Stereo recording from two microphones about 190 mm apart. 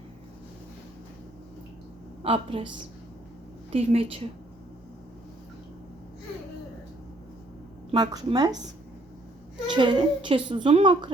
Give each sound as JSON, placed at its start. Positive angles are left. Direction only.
{"t": 2.2, "sound": "a child's voice", "side_deg": -30}
{"t": 3.7, "sound": "a woman's voice", "side_deg": -30}
{"t": 7.9, "sound": "a child's voice", "side_deg": -20}